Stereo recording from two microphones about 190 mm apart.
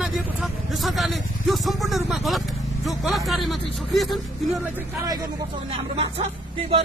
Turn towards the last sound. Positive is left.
turn(degrees=-30)  # may be behind; listen again after turning